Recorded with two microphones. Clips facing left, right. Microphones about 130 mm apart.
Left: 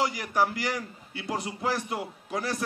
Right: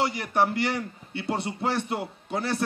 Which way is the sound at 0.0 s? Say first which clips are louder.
Right 2 dB; 30° right (ahead or behind).